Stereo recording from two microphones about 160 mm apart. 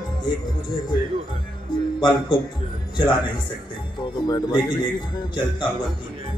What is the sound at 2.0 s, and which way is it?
Speech, 30° left (ahead or behind).